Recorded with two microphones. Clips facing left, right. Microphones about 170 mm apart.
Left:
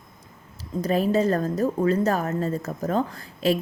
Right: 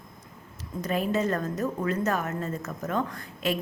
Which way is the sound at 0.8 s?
35° left (ahead or behind).